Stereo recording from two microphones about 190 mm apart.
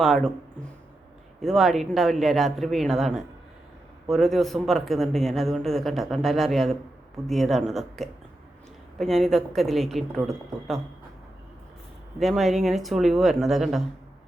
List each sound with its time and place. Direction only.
0.0 s speech: centre (ahead or behind)
1.4 s speech: centre (ahead or behind)
12.2 s speech: centre (ahead or behind)